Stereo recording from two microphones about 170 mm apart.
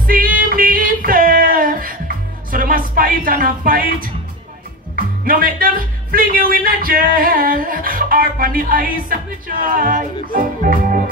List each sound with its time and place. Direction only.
0.0 s music: 55° right (ahead or behind)
4.9 s speech: 55° right (ahead or behind)